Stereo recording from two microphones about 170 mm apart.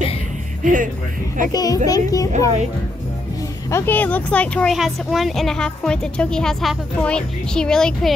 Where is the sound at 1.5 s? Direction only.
20° left (ahead or behind).